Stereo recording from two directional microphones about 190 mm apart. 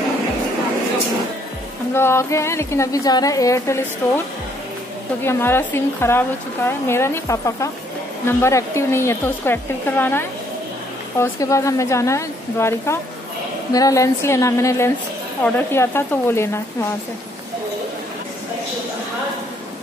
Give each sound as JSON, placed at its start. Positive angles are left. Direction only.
{"t": 2.0, "sound": "a woman's voice", "side_deg": 15}
{"t": 5.2, "sound": "a woman's voice", "side_deg": 10}